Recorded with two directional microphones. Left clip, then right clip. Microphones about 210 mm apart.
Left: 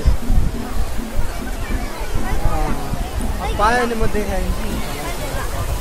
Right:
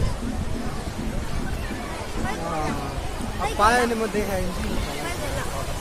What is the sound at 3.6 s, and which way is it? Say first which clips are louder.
Speech: left 3 dB; 10° right (ahead or behind).